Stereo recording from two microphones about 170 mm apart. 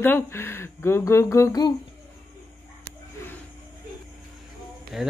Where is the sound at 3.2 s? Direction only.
15° left (ahead or behind).